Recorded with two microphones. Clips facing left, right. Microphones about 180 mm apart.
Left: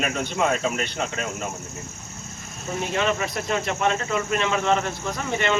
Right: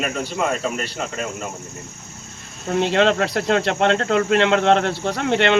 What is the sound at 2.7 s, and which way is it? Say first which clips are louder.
Speech: right 7 dB; 75° right (ahead or behind).